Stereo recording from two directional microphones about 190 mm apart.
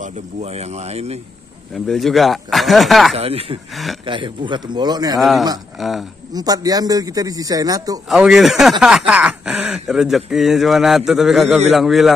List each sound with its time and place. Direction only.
0.0 s speech: 35° right (ahead or behind)
1.9 s speech: centre (ahead or behind)
3.2 s speech: 30° right (ahead or behind)
5.2 s speech: centre (ahead or behind)
6.3 s speech: 20° right (ahead or behind)
8.1 s speech: centre (ahead or behind)